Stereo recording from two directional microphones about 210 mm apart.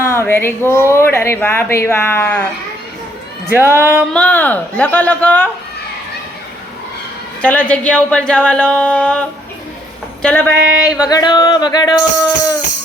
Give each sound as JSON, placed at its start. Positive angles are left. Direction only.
{"t": 0.0, "sound": "speech", "side_deg": 10}
{"t": 3.5, "sound": "music", "side_deg": -10}
{"t": 4.1, "sound": "speech", "side_deg": 5}
{"t": 7.4, "sound": "speech", "side_deg": 5}
{"t": 10.2, "sound": "speech", "side_deg": 5}
{"t": 11.1, "sound": "music", "side_deg": 20}